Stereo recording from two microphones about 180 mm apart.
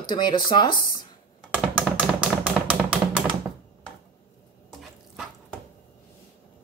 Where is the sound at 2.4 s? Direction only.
5° right (ahead or behind).